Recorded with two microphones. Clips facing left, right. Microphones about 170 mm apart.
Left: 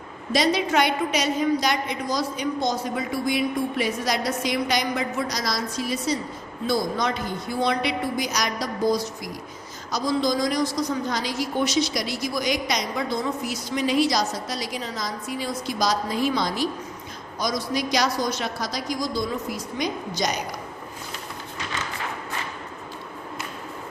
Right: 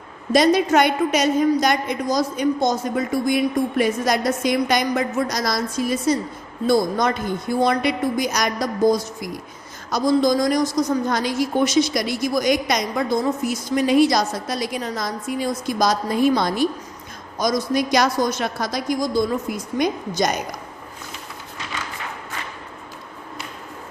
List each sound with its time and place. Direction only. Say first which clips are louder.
0.3 s a woman's voice: right 6 dB; 50° right (ahead or behind)